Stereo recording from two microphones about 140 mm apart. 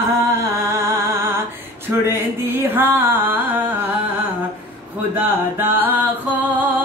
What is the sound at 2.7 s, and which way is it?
Music, 15° right (ahead or behind).